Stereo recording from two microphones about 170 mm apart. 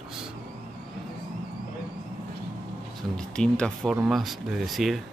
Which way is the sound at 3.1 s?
5° left (ahead or behind).